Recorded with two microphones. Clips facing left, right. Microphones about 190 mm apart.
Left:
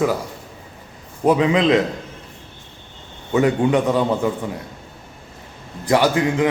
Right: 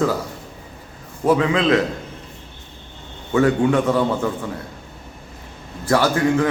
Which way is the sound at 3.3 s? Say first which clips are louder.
Even; 20° left (ahead or behind).